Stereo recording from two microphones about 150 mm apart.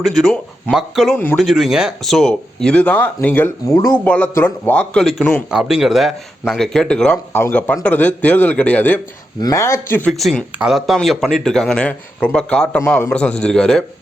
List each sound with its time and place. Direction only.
0.0 s speech: centre (ahead or behind); by 4.0 s 20° left (ahead or behind)
4.0 s a man's voice: 10° left (ahead or behind)
9.4 s speech: 20° left (ahead or behind)
10.1 s speech: centre (ahead or behind)
12.8 s a man's voice: 15° left (ahead or behind)